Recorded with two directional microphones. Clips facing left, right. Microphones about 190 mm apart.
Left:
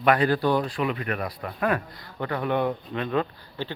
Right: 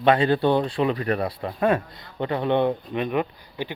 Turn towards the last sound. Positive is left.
turn(degrees=-15)  # may be behind; listen again after turning